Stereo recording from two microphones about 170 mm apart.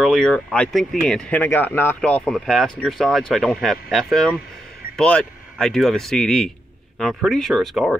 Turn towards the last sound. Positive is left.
turn(degrees=0)  # may be behind; listen again after turning